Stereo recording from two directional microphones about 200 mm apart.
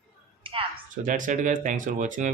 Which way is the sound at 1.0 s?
40° right (ahead or behind).